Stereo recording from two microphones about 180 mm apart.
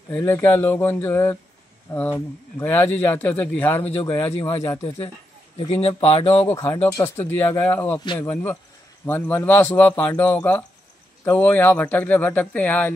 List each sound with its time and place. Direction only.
0.1 s a man's voice: 15° left (ahead or behind)
4.0 s speech: 30° left (ahead or behind)
4.6 s speech: 20° left (ahead or behind)
5.6 s speech: 30° left (ahead or behind)
6.4 s a man's voice: 15° left (ahead or behind)
9.0 s a man's voice: 10° left (ahead or behind)